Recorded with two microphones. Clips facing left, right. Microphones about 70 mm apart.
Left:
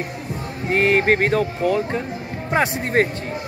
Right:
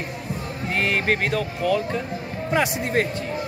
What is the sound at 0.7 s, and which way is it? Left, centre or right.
Speech, left.